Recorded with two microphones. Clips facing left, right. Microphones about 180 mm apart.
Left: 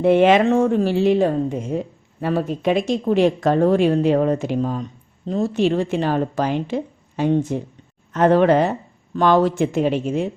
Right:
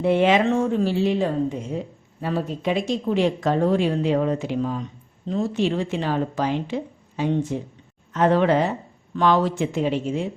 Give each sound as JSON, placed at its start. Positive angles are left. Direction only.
{"t": 0.0, "sound": "speech", "side_deg": 55}